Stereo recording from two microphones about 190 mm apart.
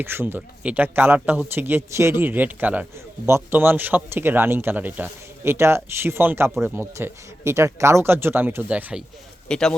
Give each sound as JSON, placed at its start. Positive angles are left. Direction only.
{"t": 0.0, "sound": "a man's voice", "side_deg": -10}